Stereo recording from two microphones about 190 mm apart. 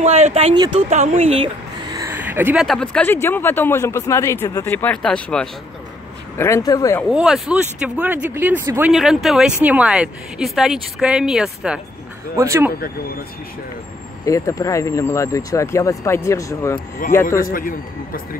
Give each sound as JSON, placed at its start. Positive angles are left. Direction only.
{"t": 0.0, "sound": "speech", "side_deg": -35}
{"t": 0.8, "sound": "speech", "side_deg": -40}
{"t": 1.9, "sound": "speech", "side_deg": -15}
{"t": 6.3, "sound": "speech", "side_deg": 15}
{"t": 7.1, "sound": "speech", "side_deg": 0}
{"t": 14.2, "sound": "speech", "side_deg": 15}
{"t": 17.4, "sound": "speech", "side_deg": 45}